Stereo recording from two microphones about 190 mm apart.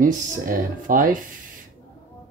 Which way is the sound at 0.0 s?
45° right (ahead or behind).